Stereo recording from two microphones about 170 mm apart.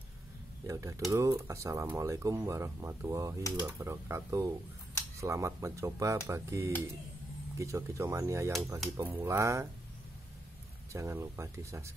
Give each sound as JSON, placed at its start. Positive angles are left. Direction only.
{"t": 0.7, "sound": "speech", "side_deg": -20}
{"t": 10.9, "sound": "speech", "side_deg": -15}